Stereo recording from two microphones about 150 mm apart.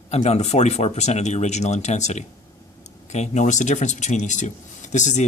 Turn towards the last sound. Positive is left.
turn(degrees=50)  # may be behind; listen again after turning